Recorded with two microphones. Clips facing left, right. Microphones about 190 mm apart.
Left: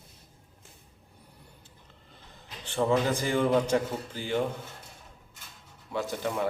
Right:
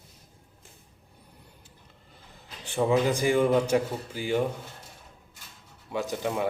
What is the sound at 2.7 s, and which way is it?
A man's voice, 10° right (ahead or behind).